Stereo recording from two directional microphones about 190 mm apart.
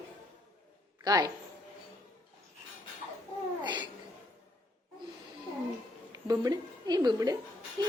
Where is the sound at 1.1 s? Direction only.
20° right (ahead or behind).